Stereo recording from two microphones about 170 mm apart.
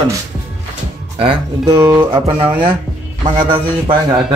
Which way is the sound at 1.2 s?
35° right (ahead or behind).